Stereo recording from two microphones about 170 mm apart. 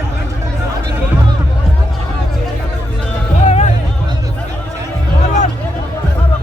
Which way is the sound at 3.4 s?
45° left (ahead or behind).